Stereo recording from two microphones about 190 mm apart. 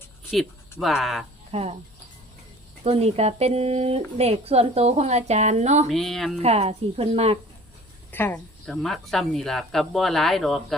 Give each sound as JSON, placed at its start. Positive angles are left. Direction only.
{"t": 0.8, "sound": "speech", "side_deg": 0}
{"t": 1.5, "sound": "speech", "side_deg": -30}
{"t": 2.8, "sound": "speech", "side_deg": -35}
{"t": 5.9, "sound": "speech", "side_deg": 0}
{"t": 6.4, "sound": "speech", "side_deg": -35}
{"t": 8.1, "sound": "speech", "side_deg": 10}